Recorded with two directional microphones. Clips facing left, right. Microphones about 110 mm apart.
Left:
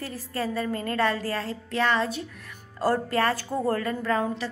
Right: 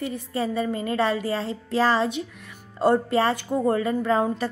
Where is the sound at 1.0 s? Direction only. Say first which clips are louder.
Right 2 dB; 25° right (ahead or behind).